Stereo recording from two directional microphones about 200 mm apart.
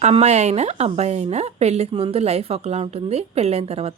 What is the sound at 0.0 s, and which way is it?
Speech, 35° right (ahead or behind).